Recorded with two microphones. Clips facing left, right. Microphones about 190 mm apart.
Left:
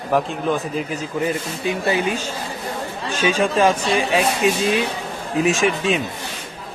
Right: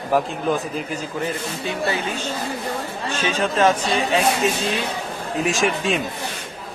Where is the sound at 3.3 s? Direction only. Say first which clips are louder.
Left 2 dB; 10° left (ahead or behind).